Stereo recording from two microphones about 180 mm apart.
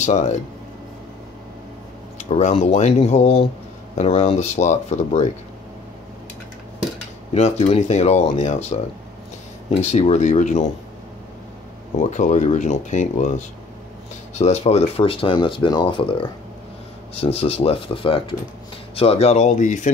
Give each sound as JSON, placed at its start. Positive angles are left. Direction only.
{"t": 0.0, "sound": "speech", "side_deg": 40}
{"t": 2.1, "sound": "speech", "side_deg": 40}
{"t": 7.3, "sound": "speech", "side_deg": 35}
{"t": 9.8, "sound": "speech", "side_deg": 40}
{"t": 12.0, "sound": "speech", "side_deg": 40}